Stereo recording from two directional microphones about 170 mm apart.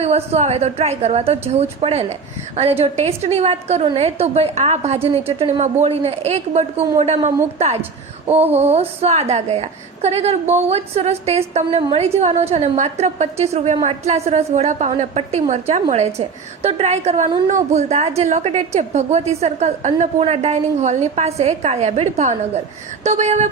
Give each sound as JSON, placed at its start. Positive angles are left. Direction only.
{"t": 0.0, "sound": "speech", "side_deg": -40}
{"t": 8.3, "sound": "speech", "side_deg": -35}